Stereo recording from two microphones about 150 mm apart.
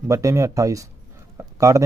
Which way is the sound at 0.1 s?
20° right (ahead or behind).